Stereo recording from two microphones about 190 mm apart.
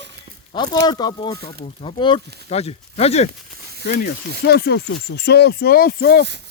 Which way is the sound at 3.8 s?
60° left (ahead or behind).